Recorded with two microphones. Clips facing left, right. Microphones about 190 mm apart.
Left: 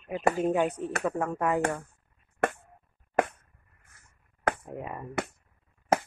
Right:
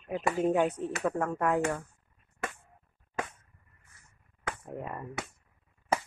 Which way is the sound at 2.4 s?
65° left (ahead or behind).